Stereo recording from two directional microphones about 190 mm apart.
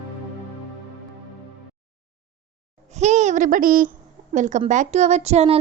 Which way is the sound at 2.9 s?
35° right (ahead or behind).